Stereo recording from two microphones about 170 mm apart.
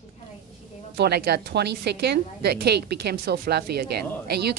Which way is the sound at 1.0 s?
75° right (ahead or behind).